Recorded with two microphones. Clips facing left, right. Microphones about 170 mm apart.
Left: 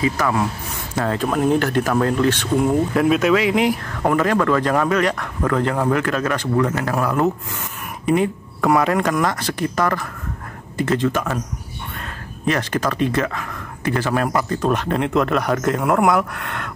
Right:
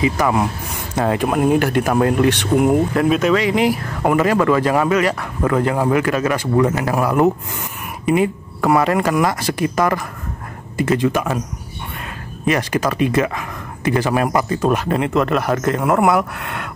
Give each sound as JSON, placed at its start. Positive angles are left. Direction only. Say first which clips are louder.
{"t": 0.0, "sound": "speech", "louder": "right 3 dB", "side_deg": -15}
{"t": 2.9, "sound": "speech", "louder": "even", "side_deg": 0}
{"t": 12.4, "sound": "speech", "louder": "right 2 dB", "side_deg": -10}